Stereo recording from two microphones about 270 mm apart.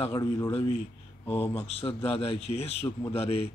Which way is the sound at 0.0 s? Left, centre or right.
Centre.